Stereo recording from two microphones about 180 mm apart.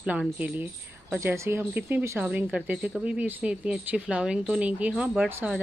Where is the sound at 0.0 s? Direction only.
5° right (ahead or behind).